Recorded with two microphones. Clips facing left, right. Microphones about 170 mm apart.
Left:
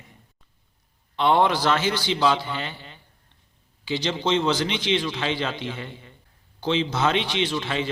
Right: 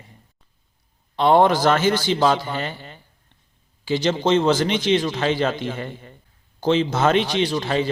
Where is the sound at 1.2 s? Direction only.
40° right (ahead or behind).